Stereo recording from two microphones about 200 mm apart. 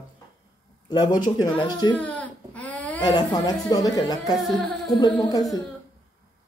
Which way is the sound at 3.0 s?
20° left (ahead or behind).